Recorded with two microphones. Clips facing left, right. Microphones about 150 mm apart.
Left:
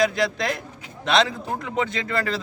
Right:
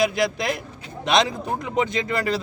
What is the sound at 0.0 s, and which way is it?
Speech, 10° right (ahead or behind).